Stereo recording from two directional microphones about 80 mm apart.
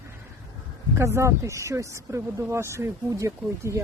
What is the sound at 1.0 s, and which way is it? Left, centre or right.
Speech, right.